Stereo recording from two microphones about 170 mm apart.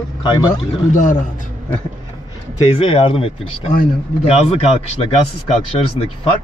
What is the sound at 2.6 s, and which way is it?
Speech, 35° left (ahead or behind).